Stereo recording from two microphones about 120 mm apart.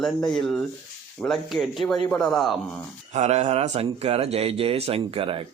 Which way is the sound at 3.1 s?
65° right (ahead or behind).